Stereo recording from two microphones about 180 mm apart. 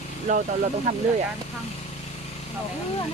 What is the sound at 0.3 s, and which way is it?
Speech, 40° right (ahead or behind).